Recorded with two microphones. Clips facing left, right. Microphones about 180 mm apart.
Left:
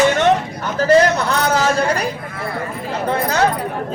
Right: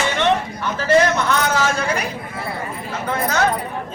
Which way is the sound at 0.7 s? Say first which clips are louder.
Left 3 dB; 35° left (ahead or behind).